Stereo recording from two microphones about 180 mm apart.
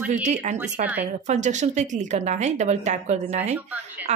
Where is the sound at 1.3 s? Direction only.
40° right (ahead or behind).